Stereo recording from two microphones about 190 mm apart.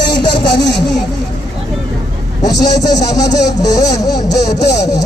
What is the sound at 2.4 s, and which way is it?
A man's voice, 20° left (ahead or behind).